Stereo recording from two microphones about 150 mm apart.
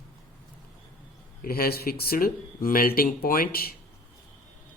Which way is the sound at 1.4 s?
85° left.